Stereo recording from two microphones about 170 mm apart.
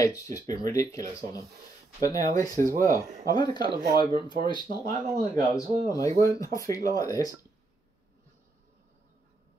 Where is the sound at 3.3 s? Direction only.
25° left (ahead or behind).